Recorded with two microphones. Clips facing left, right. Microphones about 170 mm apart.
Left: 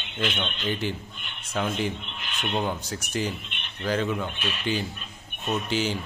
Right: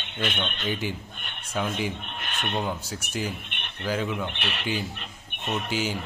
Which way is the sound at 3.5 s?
55° right (ahead or behind).